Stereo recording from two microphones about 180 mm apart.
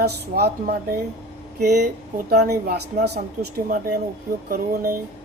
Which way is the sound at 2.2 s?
60° right (ahead or behind).